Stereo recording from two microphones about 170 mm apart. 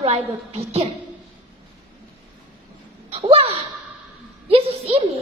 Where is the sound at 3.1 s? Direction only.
35° right (ahead or behind).